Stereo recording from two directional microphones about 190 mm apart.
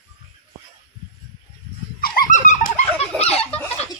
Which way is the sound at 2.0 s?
50° left (ahead or behind).